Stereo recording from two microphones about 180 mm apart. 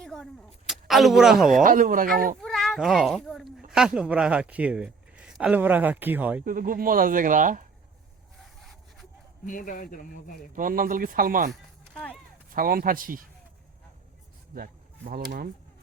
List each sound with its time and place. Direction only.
0.0 s a sound: centre (ahead or behind)
0.7 s speech: centre (ahead or behind)
1.6 s speech: 50° right (ahead or behind)
2.4 s a man's voice: centre (ahead or behind)
6.4 s speech: 50° right (ahead or behind)
9.5 s a man's voice: 50° left (ahead or behind)
10.5 s speech: 50° right (ahead or behind)
12.5 s speech: 50° right (ahead or behind)
14.5 s speech: 55° right (ahead or behind)